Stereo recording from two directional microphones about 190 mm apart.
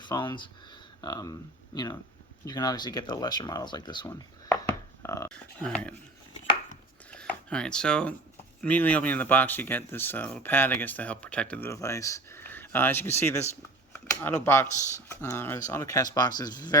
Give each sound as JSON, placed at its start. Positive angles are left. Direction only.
{"t": 0.0, "sound": "speech", "side_deg": 25}
{"t": 5.0, "sound": "dog", "side_deg": 15}
{"t": 5.3, "sound": "speech", "side_deg": 5}
{"t": 7.1, "sound": "a sound", "side_deg": 5}
{"t": 8.6, "sound": "speech", "side_deg": 10}